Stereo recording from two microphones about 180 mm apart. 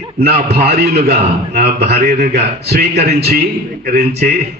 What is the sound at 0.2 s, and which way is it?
A man's voice, 65° right (ahead or behind).